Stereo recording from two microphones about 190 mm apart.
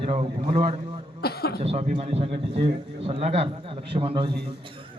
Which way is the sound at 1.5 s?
35° right (ahead or behind).